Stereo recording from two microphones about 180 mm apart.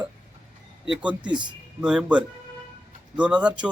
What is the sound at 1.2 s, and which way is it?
Speech, 25° right (ahead or behind).